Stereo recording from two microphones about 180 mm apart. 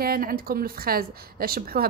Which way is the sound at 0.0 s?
55° right (ahead or behind).